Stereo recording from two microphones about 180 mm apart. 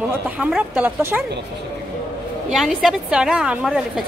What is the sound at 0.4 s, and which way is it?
Speech, 5° right (ahead or behind).